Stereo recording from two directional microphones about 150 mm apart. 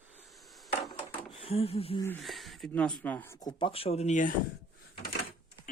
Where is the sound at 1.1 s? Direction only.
40° left (ahead or behind).